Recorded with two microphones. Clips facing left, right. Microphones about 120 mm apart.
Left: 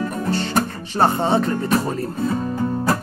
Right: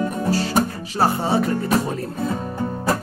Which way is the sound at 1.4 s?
Centre (ahead or behind).